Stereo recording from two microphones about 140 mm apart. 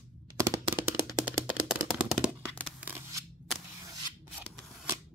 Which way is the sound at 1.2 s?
5° right (ahead or behind).